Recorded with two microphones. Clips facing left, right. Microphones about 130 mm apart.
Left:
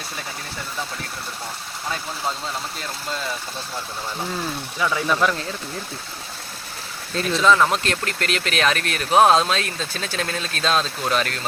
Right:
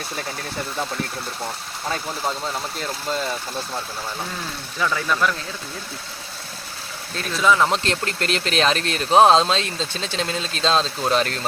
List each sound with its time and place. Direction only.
4.8 s speech: 10° left (ahead or behind)
7.2 s speech: centre (ahead or behind)
7.5 s speech: 15° right (ahead or behind)
7.9 s speech: 30° right (ahead or behind)